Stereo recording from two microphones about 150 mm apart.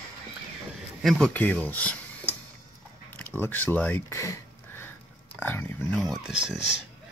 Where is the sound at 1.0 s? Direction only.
Centre (ahead or behind).